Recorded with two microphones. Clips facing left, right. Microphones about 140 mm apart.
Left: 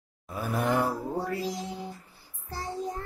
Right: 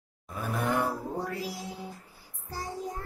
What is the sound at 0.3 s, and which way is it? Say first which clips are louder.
Speech: left 2 dB; centre (ahead or behind).